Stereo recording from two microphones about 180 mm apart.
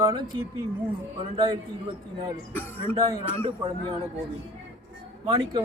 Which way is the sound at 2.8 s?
20° right (ahead or behind).